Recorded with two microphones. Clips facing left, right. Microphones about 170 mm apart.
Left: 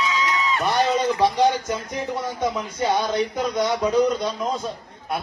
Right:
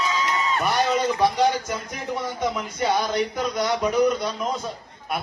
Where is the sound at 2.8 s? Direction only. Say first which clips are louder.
Left 1 dB; 20° left (ahead or behind).